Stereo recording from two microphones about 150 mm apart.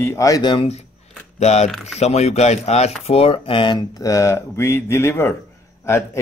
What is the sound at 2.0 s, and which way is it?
Speech, 45° left (ahead or behind).